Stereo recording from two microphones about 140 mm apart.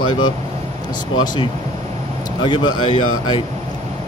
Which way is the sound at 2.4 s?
30° left (ahead or behind).